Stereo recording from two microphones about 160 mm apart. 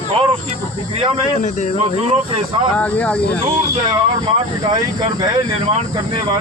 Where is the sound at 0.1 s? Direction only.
35° right (ahead or behind).